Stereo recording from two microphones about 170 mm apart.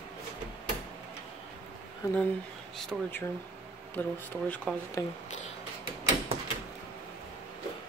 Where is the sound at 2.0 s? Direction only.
20° left (ahead or behind).